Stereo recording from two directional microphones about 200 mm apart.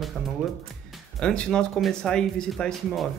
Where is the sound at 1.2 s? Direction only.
5° left (ahead or behind).